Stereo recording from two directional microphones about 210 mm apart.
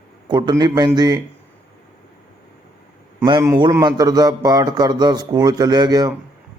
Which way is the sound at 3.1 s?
15° right (ahead or behind).